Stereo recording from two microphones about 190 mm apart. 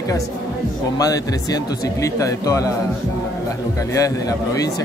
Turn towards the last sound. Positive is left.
turn(degrees=20)  # may be behind; listen again after turning